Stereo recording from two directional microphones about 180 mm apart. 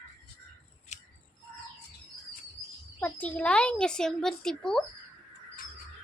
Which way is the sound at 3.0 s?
10° left (ahead or behind).